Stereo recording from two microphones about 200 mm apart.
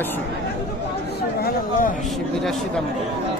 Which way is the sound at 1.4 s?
45° left (ahead or behind).